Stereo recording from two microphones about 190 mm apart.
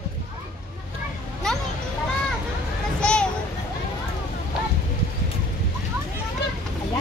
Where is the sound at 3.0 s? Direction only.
5° left (ahead or behind).